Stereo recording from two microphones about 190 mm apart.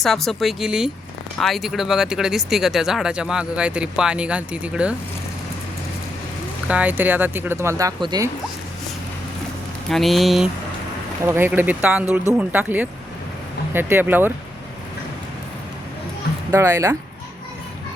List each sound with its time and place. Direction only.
0.0 s speech: centre (ahead or behind)
6.7 s speech: 5° right (ahead or behind)
9.9 s speech: centre (ahead or behind)
11.2 s speech: 10° right (ahead or behind)
16.5 s speech: 15° right (ahead or behind)